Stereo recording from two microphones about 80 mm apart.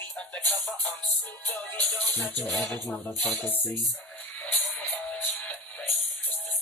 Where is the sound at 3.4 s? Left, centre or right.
Left.